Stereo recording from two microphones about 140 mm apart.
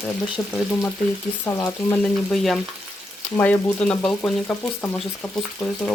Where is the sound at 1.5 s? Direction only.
20° left (ahead or behind).